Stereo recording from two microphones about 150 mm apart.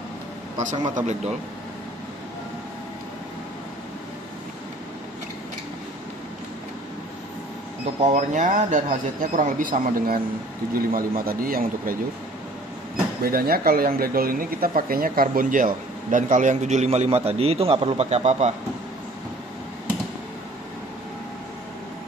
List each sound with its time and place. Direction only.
0.9 s a man's voice: 50° right (ahead or behind)
8.1 s speech: 55° right (ahead or behind); by 12.0 s 75° right (ahead or behind)
13.2 s speech: 85° right; by 18.5 s 45° right (ahead or behind)